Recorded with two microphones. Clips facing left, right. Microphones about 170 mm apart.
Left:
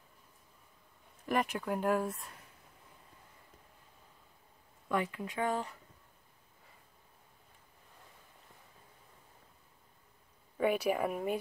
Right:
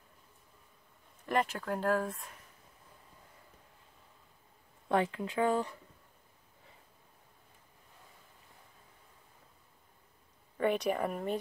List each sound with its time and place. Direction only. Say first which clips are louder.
1.2 s speech: right 1 dB; 15° left (ahead or behind)
4.8 s speech: right 4 dB; 30° right (ahead or behind)
10.6 s speech: even; 5° left (ahead or behind)